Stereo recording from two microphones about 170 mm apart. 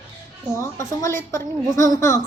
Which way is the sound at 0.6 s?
15° left (ahead or behind).